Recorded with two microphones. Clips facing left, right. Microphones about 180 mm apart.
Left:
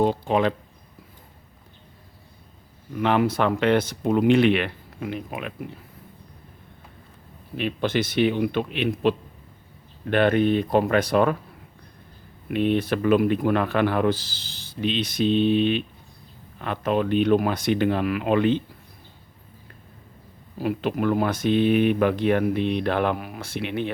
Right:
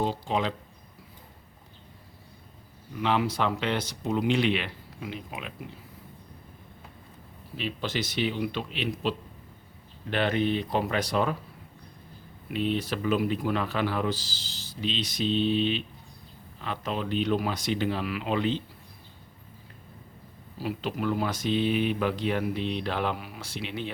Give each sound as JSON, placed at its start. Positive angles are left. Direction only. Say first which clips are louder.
{"t": 0.0, "sound": "speech", "louder": "left 7 dB", "side_deg": 55}
{"t": 2.9, "sound": "speech", "louder": "left 5 dB", "side_deg": 55}
{"t": 7.5, "sound": "speech", "louder": "left 7 dB", "side_deg": 55}
{"t": 12.5, "sound": "speech", "louder": "left 6 dB", "side_deg": 60}
{"t": 20.6, "sound": "speech", "louder": "left 6 dB", "side_deg": 55}